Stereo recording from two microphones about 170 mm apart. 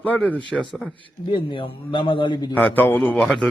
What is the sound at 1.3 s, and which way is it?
A man's voice, 30° left (ahead or behind).